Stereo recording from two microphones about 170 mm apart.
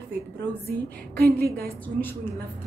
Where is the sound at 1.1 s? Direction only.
65° right (ahead or behind).